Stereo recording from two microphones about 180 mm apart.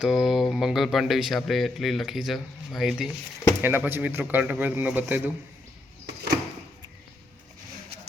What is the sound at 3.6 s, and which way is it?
A man's voice, 10° right (ahead or behind).